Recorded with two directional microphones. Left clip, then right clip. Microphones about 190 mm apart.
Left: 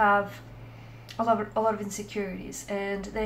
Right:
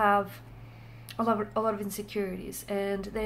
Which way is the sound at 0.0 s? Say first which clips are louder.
Left 2 dB; 40° right (ahead or behind).